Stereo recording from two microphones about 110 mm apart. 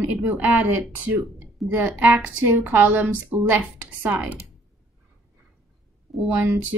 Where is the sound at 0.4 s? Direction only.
15° right (ahead or behind).